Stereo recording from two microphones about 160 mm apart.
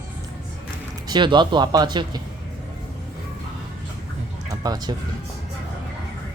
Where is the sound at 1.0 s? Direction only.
30° right (ahead or behind).